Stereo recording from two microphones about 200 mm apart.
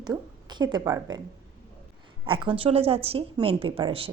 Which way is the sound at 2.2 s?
25° right (ahead or behind).